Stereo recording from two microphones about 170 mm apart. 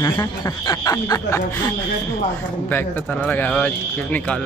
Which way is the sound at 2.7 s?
10° left (ahead or behind).